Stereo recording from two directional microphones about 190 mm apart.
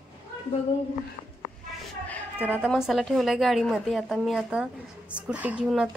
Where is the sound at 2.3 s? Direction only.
5° right (ahead or behind).